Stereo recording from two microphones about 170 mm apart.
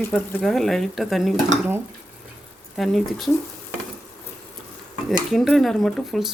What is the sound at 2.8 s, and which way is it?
Speech, centre (ahead or behind).